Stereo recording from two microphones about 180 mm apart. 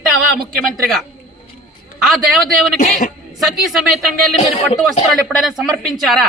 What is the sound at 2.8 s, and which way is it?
Speech, 50° left (ahead or behind).